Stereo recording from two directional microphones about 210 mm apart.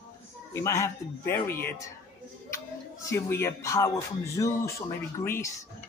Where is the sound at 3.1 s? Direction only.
15° left (ahead or behind).